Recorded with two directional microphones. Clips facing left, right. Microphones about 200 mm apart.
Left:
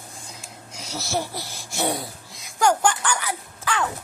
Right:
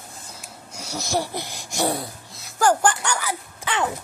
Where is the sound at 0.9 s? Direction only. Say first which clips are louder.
Right 2 dB; 15° right (ahead or behind).